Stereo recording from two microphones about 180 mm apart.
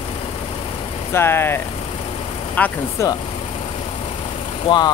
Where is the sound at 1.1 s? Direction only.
15° left (ahead or behind).